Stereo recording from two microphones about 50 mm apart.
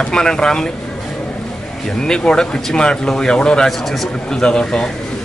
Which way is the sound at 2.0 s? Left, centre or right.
Centre.